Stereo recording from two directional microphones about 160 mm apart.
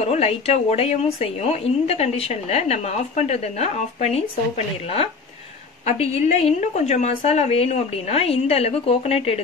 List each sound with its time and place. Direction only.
0.0 s speech: 40° left (ahead or behind)
5.9 s speech: 45° left (ahead or behind)